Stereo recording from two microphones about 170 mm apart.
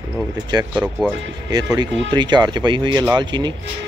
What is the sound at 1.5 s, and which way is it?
Speech, 25° right (ahead or behind).